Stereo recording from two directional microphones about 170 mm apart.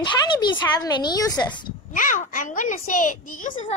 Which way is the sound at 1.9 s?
50° left (ahead or behind).